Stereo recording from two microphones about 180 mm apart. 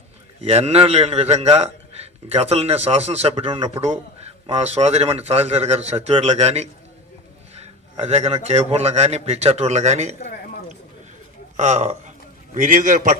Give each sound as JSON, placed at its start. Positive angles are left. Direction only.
{"t": 0.4, "sound": "a man's voice", "side_deg": -35}
{"t": 7.5, "sound": "a sound", "side_deg": -35}
{"t": 8.4, "sound": "a man's voice", "side_deg": -35}
{"t": 11.5, "sound": "a man's voice", "side_deg": -40}